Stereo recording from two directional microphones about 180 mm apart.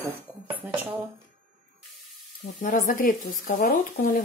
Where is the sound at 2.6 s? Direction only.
50° left (ahead or behind).